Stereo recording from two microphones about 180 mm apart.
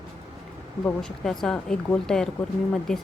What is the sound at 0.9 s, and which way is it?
A woman's voice, 5° left (ahead or behind).